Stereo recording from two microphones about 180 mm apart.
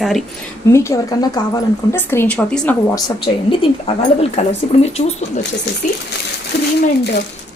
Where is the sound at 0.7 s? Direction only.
15° left (ahead or behind).